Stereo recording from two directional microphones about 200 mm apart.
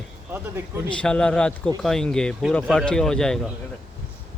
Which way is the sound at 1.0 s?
5° left (ahead or behind).